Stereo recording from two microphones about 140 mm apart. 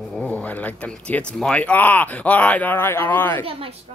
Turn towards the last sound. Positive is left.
turn(degrees=-40)  # may be behind; listen again after turning